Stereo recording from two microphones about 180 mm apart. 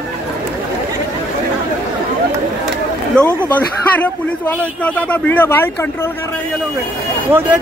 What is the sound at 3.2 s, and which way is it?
A man's voice, 5° left (ahead or behind).